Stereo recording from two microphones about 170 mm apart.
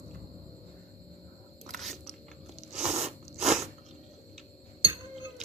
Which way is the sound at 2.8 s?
40° right (ahead or behind).